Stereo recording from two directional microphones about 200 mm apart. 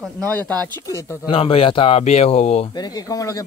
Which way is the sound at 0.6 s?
15° left (ahead or behind).